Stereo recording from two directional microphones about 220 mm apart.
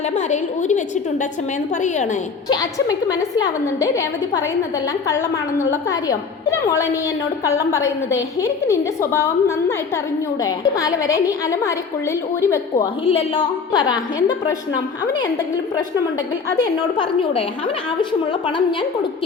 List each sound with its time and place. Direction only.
0.2 s a woman's voice: 30° left (ahead or behind)
2.5 s a woman's voice: 15° left (ahead or behind)
13.1 s a woman's voice: 25° left (ahead or behind)
16.6 s a woman's voice: 20° left (ahead or behind)